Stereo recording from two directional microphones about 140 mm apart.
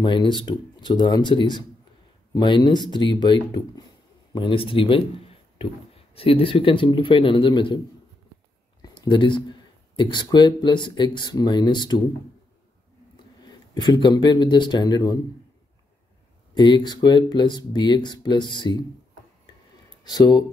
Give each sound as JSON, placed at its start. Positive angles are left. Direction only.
{"t": 0.0, "sound": "speech", "side_deg": 35}
{"t": 6.1, "sound": "speech", "side_deg": 40}
{"t": 8.8, "sound": "speech", "side_deg": 30}
{"t": 13.7, "sound": "speech", "side_deg": 30}
{"t": 16.5, "sound": "speech", "side_deg": 30}
{"t": 20.0, "sound": "speech", "side_deg": 30}